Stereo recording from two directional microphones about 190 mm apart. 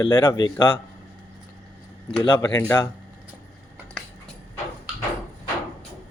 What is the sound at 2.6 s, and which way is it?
Speech, 10° left (ahead or behind).